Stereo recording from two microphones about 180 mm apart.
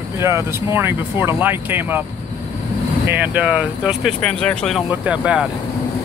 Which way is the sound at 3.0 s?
10° right (ahead or behind).